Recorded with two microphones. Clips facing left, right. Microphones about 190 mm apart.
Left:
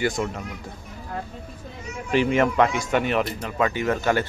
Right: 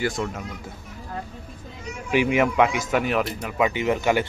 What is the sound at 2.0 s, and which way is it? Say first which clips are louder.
A man's voice: even; 10° right (ahead or behind).